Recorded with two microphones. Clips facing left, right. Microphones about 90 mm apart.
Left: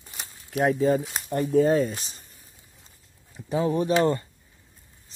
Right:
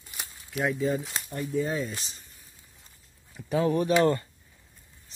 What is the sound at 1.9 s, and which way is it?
Speech, 40° left (ahead or behind).